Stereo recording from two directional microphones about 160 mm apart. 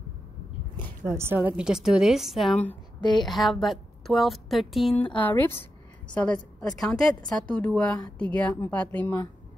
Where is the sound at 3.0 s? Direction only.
25° left (ahead or behind).